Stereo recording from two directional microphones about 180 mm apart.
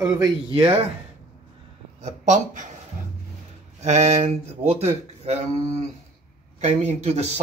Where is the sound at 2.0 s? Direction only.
40° right (ahead or behind).